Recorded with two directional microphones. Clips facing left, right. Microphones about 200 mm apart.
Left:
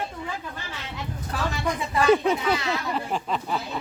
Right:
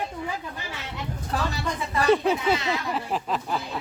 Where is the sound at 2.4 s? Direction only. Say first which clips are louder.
Right 1 dB; 20° right (ahead or behind).